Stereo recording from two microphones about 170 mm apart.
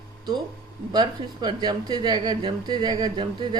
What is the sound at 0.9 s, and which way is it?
A woman's voice, 25° right (ahead or behind).